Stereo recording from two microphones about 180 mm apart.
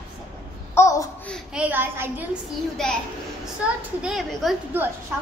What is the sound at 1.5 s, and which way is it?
Speech, 10° right (ahead or behind).